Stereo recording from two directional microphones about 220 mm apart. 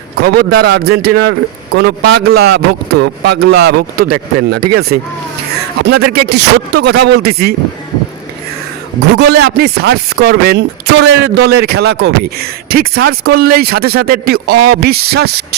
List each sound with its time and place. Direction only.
0.2 s a man's voice: 45° right (ahead or behind)
9.1 s a man's voice: 50° right (ahead or behind)